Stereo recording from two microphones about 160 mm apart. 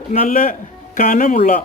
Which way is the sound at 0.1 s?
55° left (ahead or behind).